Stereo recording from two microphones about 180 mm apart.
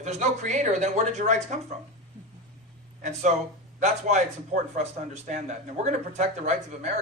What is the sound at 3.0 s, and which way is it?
A man's voice, 40° right (ahead or behind).